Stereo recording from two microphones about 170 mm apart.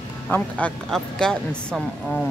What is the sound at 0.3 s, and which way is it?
A woman's voice, 10° left (ahead or behind).